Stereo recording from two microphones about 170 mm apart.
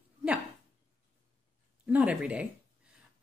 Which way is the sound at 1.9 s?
5° right (ahead or behind).